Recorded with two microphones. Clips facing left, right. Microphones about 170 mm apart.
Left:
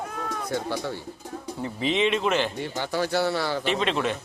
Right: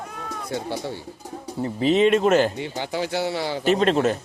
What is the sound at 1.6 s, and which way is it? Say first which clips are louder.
Speech: right 6 dB; 40° right (ahead or behind).